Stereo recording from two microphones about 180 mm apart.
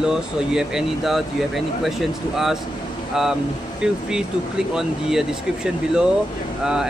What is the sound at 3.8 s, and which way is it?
Speech, 5° right (ahead or behind).